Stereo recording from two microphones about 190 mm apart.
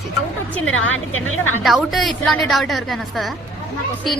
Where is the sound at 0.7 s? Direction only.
90° left.